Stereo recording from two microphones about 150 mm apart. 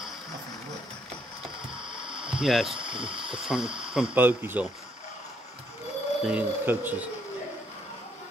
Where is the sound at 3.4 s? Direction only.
5° right (ahead or behind).